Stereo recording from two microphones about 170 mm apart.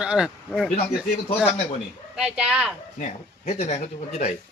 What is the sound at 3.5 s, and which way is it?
Speech, 40° left (ahead or behind).